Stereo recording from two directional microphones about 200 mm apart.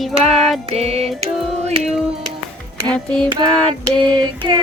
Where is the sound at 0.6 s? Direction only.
30° right (ahead or behind).